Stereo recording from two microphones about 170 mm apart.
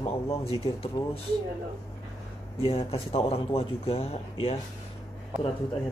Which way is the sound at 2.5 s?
35° left (ahead or behind).